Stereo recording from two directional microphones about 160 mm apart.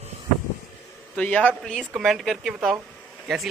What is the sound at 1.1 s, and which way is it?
A man's voice, 10° left (ahead or behind).